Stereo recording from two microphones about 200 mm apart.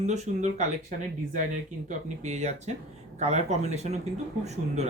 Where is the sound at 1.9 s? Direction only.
35° right (ahead or behind).